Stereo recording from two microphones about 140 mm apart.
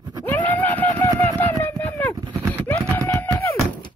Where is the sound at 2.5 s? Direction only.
15° left (ahead or behind).